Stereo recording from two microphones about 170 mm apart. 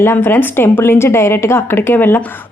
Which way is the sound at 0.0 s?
15° left (ahead or behind).